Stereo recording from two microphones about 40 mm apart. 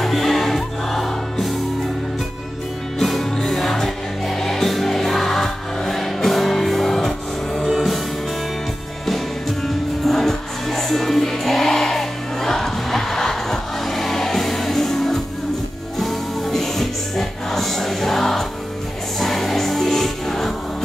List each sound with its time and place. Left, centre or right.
0.0 s music: centre
3.0 s music: centre
7.6 s music: centre
9.0 s music: centre